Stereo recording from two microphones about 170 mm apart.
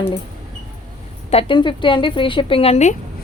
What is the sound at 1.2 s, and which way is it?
A woman's voice, 30° left (ahead or behind).